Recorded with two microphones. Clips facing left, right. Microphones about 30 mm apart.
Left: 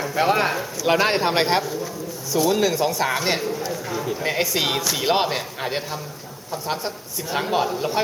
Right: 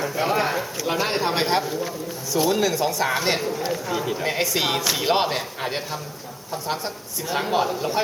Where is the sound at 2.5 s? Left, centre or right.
Centre.